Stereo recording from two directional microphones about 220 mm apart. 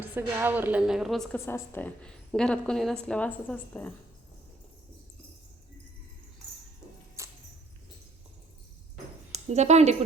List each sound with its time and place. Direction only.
0.0 s a woman's voice: 10° right (ahead or behind); by 3.9 s 5° left (ahead or behind)
7.2 s a sound: 15° right (ahead or behind)
9.3 s speech: 30° right (ahead or behind)